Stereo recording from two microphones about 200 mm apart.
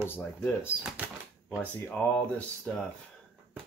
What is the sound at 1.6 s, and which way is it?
Speech, 10° left (ahead or behind).